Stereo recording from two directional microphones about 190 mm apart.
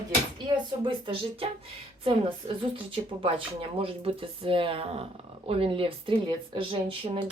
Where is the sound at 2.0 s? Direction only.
30° right (ahead or behind).